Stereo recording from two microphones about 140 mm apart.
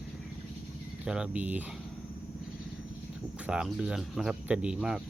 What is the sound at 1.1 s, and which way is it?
Speech, 5° right (ahead or behind).